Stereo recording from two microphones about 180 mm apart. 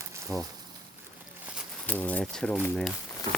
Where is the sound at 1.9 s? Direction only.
10° left (ahead or behind).